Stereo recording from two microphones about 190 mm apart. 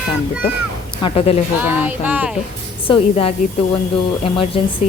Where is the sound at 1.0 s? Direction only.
30° left (ahead or behind).